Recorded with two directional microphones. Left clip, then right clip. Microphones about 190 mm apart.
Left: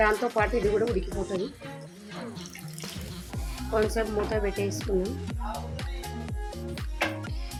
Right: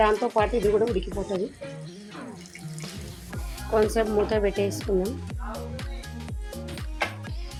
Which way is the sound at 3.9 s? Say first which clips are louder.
Right 5 dB; 35° right (ahead or behind).